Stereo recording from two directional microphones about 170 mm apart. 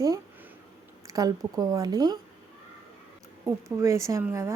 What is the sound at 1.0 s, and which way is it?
Speech, 20° right (ahead or behind).